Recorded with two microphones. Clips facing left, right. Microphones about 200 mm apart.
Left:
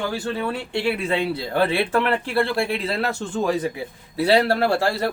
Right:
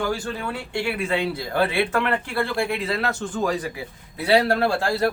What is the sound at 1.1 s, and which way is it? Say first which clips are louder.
Speech: left 1 dB; 25° left (ahead or behind).